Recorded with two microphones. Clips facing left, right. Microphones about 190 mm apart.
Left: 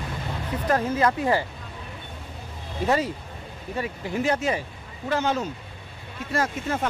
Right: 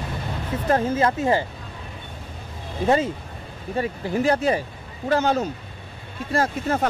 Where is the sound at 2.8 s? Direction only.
25° right (ahead or behind).